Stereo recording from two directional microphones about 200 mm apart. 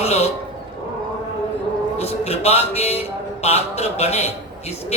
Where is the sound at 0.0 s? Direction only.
30° left (ahead or behind).